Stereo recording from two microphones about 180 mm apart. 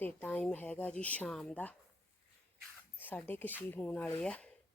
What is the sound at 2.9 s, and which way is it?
Speech, 10° left (ahead or behind).